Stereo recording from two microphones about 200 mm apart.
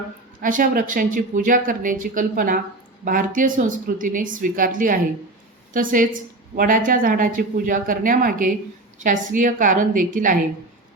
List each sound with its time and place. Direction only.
0.4 s speech: 45° right (ahead or behind)